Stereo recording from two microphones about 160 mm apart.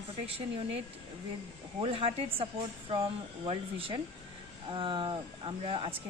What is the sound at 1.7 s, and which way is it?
A woman's voice, 35° right (ahead or behind).